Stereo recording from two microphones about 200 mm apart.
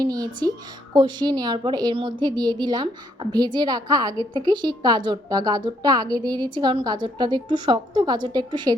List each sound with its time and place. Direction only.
0.0 s a woman's voice: 20° right (ahead or behind)